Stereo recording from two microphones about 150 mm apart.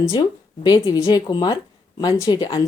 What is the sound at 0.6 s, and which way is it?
A woman's voice, 30° left (ahead or behind).